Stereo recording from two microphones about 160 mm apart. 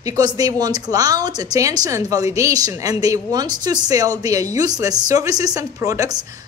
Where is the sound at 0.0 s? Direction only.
25° right (ahead or behind).